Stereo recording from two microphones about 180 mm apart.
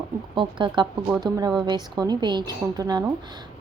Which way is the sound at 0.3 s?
25° right (ahead or behind).